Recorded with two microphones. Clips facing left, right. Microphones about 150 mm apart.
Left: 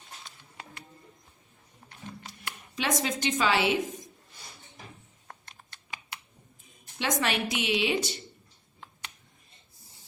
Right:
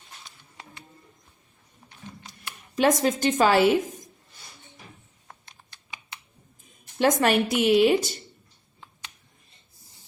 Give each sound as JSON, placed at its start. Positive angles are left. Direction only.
{"t": 2.7, "sound": "a woman's voice", "side_deg": -50}
{"t": 7.0, "sound": "a woman's voice", "side_deg": -50}